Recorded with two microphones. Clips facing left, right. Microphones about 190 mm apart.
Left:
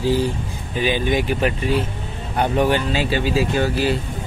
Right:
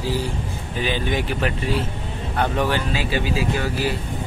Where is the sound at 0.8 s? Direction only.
15° left (ahead or behind).